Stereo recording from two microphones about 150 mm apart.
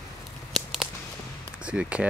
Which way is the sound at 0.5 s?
Centre (ahead or behind).